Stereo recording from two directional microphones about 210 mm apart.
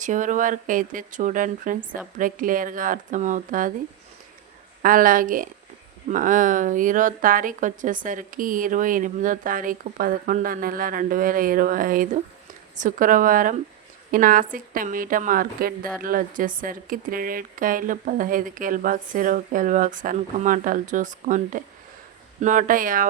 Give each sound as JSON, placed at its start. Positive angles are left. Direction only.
{"t": 0.0, "sound": "speech", "side_deg": -35}
{"t": 4.8, "sound": "speech", "side_deg": -40}